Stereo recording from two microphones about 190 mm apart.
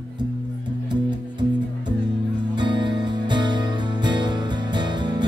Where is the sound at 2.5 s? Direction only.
25° right (ahead or behind).